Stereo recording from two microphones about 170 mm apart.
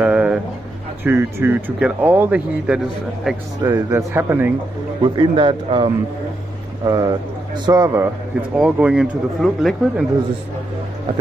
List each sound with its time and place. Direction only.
0.0 s a sound: 10° right (ahead or behind)
1.0 s speech: 10° right (ahead or behind)
3.6 s speech: 20° right (ahead or behind)
5.0 s a man's voice: 30° right (ahead or behind); by 10.0 s centre (ahead or behind)